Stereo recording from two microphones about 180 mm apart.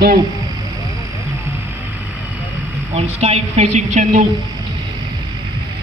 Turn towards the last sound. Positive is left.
turn(degrees=-40)  # may be behind; listen again after turning